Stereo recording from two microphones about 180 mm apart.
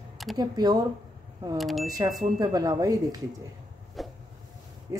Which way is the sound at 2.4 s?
20° right (ahead or behind).